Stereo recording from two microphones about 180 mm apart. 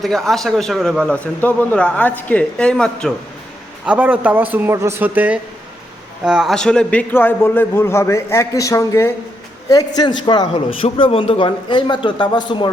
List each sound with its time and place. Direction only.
0.0 s a man's voice: centre (ahead or behind)
3.8 s a man's voice: 5° right (ahead or behind); by 12.7 s 25° left (ahead or behind)